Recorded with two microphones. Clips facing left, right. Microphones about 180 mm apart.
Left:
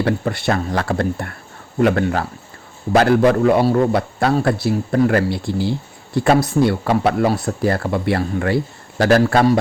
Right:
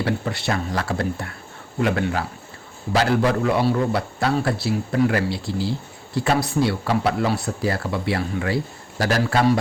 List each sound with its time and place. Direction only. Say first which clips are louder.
0.0 s a man's voice: left 5 dB; 50° left (ahead or behind)